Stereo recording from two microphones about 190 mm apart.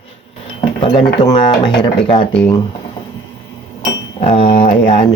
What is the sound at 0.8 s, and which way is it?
Speech, 30° left (ahead or behind).